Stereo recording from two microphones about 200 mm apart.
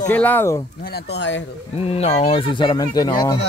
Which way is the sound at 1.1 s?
65° left (ahead or behind).